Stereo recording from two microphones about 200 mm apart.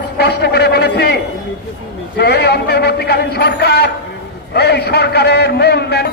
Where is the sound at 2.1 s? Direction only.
55° left (ahead or behind).